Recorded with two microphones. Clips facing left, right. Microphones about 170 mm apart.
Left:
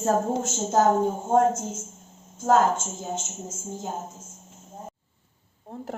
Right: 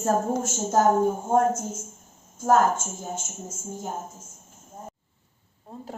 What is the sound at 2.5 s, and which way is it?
Speech, 25° left (ahead or behind).